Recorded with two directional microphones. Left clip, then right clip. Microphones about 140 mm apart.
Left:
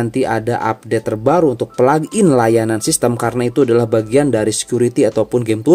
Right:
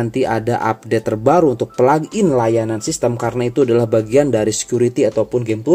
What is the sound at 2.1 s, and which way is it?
Speech, 35° left (ahead or behind).